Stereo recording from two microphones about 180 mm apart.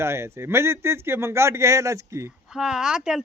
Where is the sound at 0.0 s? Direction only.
15° right (ahead or behind).